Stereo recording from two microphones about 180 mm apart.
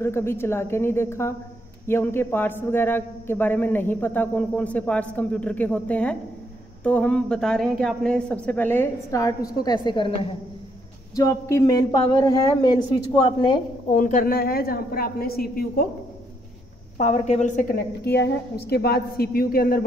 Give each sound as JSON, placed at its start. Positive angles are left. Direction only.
{"t": 0.0, "sound": "a man's voice", "side_deg": 15}
{"t": 11.1, "sound": "a man's voice", "side_deg": 15}
{"t": 13.9, "sound": "a woman's voice", "side_deg": 45}
{"t": 17.3, "sound": "a woman's voice", "side_deg": 45}